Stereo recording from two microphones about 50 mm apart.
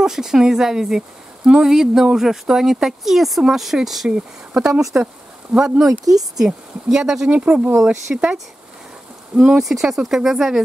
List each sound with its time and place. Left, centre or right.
0.0 s speech: centre
7.2 s speech: right
7.8 s speech: centre
9.6 s speech: centre